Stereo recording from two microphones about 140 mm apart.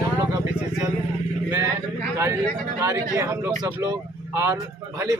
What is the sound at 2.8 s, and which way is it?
Speech, 20° right (ahead or behind).